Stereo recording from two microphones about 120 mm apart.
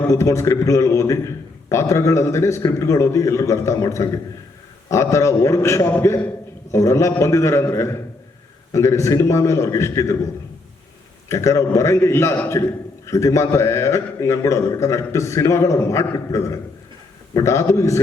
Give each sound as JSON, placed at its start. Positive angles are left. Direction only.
{"t": 0.1, "sound": "a man's voice", "side_deg": 25}
{"t": 11.3, "sound": "a man's voice", "side_deg": 25}